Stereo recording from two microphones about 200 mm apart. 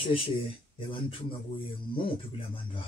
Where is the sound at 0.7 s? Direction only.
25° left (ahead or behind).